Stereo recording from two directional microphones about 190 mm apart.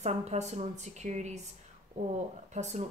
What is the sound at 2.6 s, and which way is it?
Speech, 40° right (ahead or behind).